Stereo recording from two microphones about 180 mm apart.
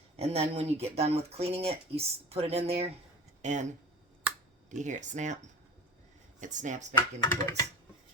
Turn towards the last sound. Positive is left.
turn(degrees=15)  # may be behind; listen again after turning